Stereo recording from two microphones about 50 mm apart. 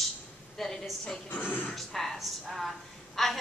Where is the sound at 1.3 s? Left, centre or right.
Left.